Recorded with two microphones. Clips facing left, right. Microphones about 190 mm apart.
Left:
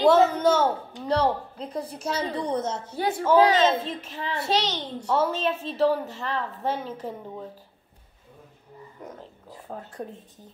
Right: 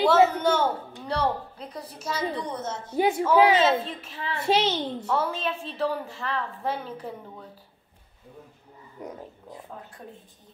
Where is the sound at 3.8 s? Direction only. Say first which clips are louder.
Left 2 dB; 40° left (ahead or behind).